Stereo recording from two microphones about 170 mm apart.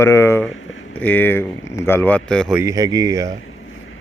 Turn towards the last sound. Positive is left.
turn(degrees=-25)  # may be behind; listen again after turning